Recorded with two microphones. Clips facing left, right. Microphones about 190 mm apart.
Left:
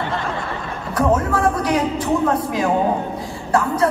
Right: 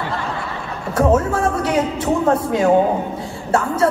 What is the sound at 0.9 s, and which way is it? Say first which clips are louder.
Speech: right 2 dB; 25° right (ahead or behind).